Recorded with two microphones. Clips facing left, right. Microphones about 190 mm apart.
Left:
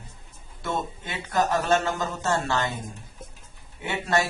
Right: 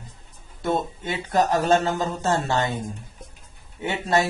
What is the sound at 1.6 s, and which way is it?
Speech, 30° right (ahead or behind).